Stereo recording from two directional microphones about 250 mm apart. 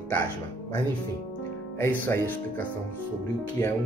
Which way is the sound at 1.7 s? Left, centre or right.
Centre.